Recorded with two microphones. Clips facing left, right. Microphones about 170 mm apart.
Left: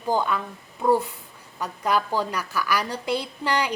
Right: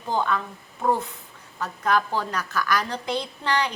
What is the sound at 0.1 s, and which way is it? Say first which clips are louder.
A woman's voice: left 1 dB; 10° left (ahead or behind).